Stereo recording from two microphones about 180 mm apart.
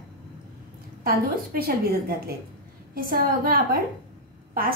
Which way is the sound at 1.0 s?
60° right (ahead or behind).